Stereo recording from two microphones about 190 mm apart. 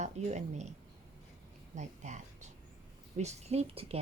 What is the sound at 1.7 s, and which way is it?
Speech, 40° right (ahead or behind).